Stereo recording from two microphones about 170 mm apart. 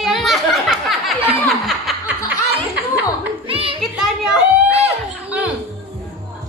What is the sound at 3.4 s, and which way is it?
Music, 30° right (ahead or behind).